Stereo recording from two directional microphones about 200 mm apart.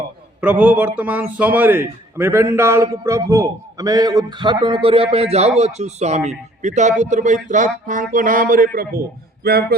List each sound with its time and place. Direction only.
0.4 s a man's voice: 10° right (ahead or behind); by 9.7 s 50° right (ahead or behind)